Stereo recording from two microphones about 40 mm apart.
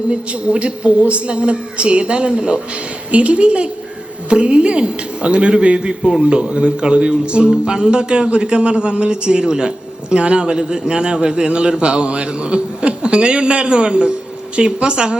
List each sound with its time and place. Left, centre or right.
0.1 s a woman's voice: right
6.2 s speech: right